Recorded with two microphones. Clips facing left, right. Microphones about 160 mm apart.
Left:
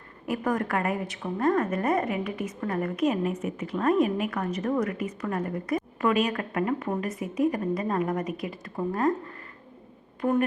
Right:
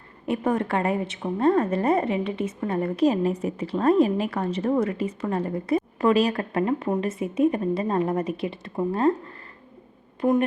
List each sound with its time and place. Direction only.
0.3 s a woman's voice: 25° right (ahead or behind)
10.2 s speech: 15° right (ahead or behind)